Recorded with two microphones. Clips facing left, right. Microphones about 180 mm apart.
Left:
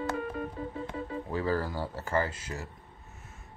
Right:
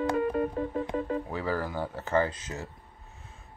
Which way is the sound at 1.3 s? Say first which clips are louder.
Left 1 dB; 15° right (ahead or behind).